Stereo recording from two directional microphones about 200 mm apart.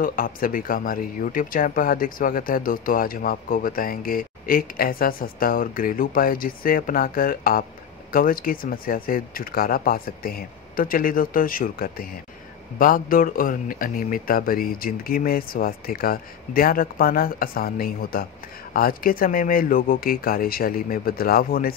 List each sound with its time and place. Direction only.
0.0 s speech: 45° left (ahead or behind)